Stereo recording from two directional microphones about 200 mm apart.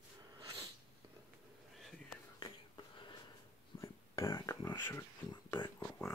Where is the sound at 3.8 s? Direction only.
15° left (ahead or behind).